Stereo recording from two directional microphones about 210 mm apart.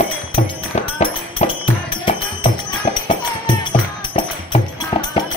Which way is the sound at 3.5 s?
20° left (ahead or behind).